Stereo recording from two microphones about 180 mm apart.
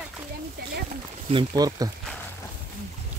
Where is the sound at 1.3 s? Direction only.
20° right (ahead or behind).